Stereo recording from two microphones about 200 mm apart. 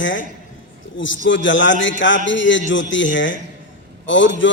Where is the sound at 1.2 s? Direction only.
70° left (ahead or behind).